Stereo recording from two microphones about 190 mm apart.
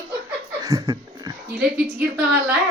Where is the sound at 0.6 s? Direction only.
15° right (ahead or behind).